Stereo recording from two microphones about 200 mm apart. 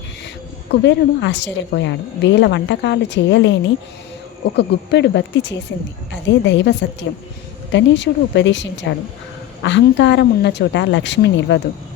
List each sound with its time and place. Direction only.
0.7 s a woman's voice: 60° left (ahead or behind)